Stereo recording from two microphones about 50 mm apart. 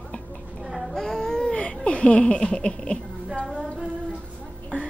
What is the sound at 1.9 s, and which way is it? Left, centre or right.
Speech, left.